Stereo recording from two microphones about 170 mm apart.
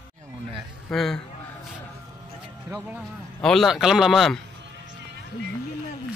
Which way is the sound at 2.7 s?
10° right (ahead or behind).